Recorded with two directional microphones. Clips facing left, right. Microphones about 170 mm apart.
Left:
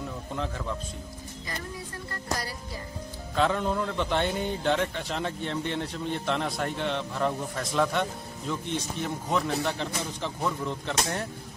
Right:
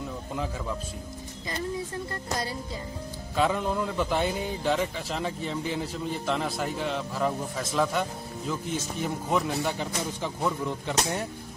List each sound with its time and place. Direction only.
0.3 s speech: 5° right (ahead or behind)
3.3 s a man's voice: 5° right (ahead or behind)